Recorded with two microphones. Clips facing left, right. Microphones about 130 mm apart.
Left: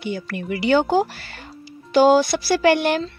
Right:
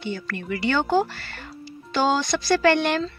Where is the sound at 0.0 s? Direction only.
10° left (ahead or behind).